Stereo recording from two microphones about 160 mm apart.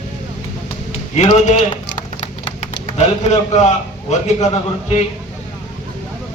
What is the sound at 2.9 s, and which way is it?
A man's voice, 45° left (ahead or behind).